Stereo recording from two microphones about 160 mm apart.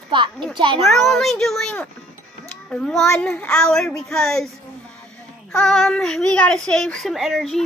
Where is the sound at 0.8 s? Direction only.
Centre (ahead or behind).